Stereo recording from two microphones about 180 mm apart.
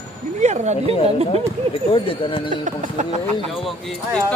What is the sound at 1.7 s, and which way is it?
Speech, 30° left (ahead or behind).